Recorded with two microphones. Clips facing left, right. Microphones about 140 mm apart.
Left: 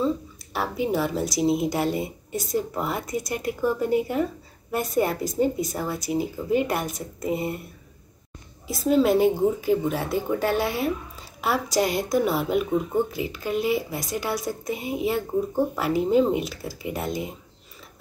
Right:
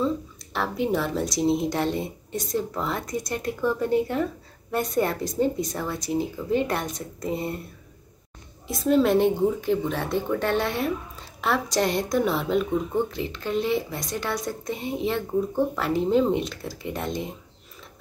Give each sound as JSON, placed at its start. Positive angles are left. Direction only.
{"t": 0.0, "sound": "speech", "side_deg": 5}
{"t": 8.6, "sound": "speech", "side_deg": 0}